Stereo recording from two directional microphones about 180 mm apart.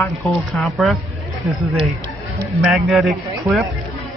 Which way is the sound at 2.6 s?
5° right (ahead or behind).